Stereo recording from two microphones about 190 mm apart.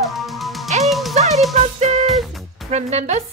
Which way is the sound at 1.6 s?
35° right (ahead or behind).